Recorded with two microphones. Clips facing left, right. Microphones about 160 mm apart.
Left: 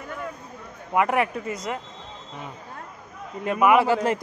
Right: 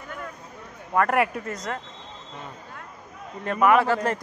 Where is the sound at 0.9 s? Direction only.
5° left (ahead or behind).